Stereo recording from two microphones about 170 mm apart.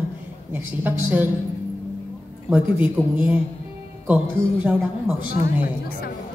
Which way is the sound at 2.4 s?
10° right (ahead or behind).